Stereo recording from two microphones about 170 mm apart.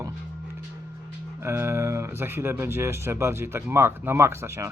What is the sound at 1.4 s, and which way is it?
Speech, 15° right (ahead or behind).